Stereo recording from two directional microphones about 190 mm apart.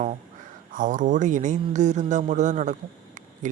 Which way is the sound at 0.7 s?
45° right (ahead or behind).